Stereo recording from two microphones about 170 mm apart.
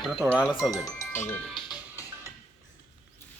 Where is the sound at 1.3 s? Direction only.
5° left (ahead or behind).